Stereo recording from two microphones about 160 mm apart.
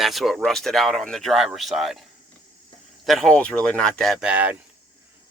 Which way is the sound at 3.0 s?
Centre (ahead or behind).